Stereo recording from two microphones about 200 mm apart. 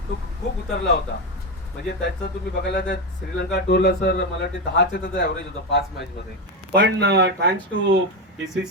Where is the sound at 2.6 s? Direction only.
55° left (ahead or behind).